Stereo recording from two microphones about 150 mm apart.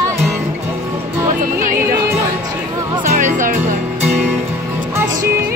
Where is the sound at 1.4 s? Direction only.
60° right (ahead or behind).